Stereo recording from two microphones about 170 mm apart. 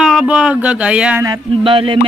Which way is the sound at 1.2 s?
30° right (ahead or behind).